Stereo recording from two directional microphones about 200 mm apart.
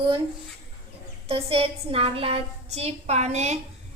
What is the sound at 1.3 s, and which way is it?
A woman's voice, 30° right (ahead or behind).